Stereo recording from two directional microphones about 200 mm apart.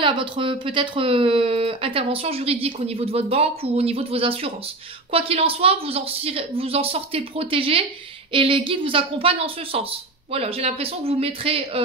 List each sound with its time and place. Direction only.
0.0 s speech: 25° right (ahead or behind)